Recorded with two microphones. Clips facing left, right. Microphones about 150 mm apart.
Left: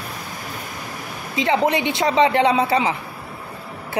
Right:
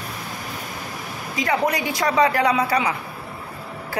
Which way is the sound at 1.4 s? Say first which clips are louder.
Left 3 dB; 25° left (ahead or behind).